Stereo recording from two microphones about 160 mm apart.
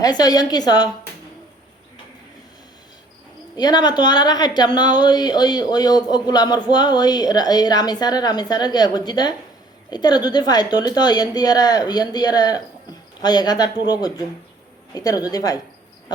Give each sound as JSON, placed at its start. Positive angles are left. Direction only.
{"t": 0.0, "sound": "a woman's voice", "side_deg": 25}
{"t": 3.6, "sound": "a woman's voice", "side_deg": 25}